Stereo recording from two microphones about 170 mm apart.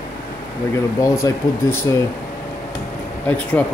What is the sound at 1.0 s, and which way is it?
Speech, 20° left (ahead or behind).